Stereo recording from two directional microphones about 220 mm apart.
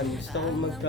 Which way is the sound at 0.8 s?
55° left (ahead or behind).